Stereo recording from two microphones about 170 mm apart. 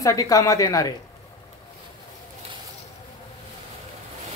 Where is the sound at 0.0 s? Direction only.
20° left (ahead or behind).